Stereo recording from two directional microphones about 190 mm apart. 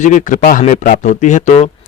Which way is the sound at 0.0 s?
40° left (ahead or behind).